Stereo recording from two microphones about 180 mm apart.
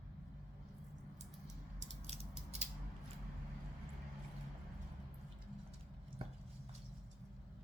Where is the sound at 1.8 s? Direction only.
35° right (ahead or behind).